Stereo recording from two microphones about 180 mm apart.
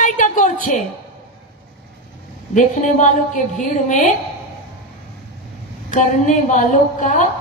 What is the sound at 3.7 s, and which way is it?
Female singing, 40° left (ahead or behind).